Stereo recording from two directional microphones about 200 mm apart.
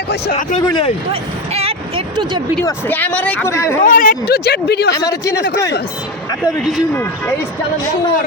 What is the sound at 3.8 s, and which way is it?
Speech, 40° left (ahead or behind).